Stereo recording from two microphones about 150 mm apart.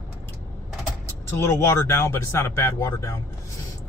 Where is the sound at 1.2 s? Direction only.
15° left (ahead or behind).